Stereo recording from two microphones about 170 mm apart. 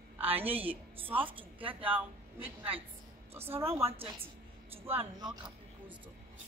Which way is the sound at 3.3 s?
15° right (ahead or behind).